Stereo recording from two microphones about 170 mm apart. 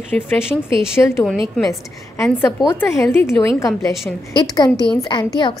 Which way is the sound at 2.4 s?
15° left (ahead or behind).